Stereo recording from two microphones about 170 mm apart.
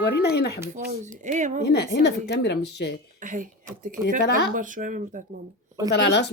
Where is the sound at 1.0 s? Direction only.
45° right (ahead or behind).